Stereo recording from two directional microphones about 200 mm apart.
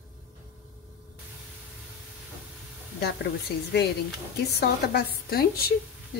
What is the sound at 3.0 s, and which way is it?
A woman's voice, 55° left (ahead or behind).